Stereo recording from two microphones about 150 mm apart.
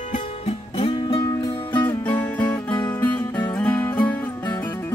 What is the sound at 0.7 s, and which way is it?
Music, 35° left (ahead or behind).